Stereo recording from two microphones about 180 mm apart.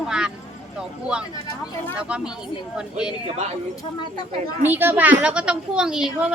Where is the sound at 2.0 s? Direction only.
5° right (ahead or behind).